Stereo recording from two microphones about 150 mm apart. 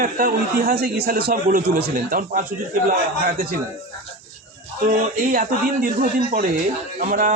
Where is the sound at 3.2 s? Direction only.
80° right.